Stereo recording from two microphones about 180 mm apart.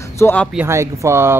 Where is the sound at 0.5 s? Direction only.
15° right (ahead or behind).